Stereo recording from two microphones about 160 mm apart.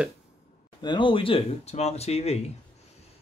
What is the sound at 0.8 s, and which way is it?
Speech, 30° left (ahead or behind).